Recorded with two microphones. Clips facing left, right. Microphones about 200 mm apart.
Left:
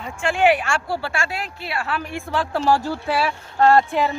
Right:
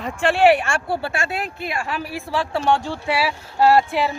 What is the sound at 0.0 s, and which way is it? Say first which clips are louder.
Speech: right 4 dB; 65° right (ahead or behind).